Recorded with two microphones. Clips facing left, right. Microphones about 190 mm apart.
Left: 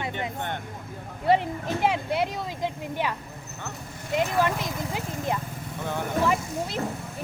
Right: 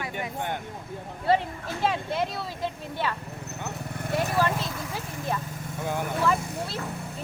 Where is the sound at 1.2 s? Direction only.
20° left (ahead or behind).